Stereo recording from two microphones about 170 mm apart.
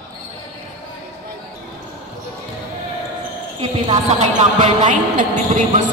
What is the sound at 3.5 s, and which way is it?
A woman's voice, 40° right (ahead or behind).